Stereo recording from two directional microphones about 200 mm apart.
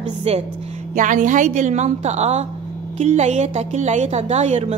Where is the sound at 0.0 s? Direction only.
30° right (ahead or behind).